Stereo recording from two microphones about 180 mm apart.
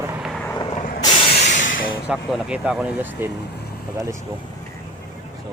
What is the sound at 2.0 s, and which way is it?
Speech, 5° right (ahead or behind).